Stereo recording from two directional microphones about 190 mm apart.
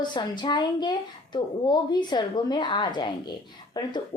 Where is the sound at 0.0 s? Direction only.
25° left (ahead or behind).